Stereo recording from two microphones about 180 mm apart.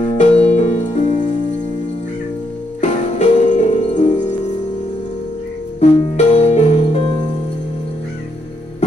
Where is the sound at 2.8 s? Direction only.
40° left (ahead or behind).